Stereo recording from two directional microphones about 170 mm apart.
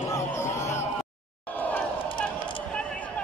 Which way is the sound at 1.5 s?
10° left (ahead or behind).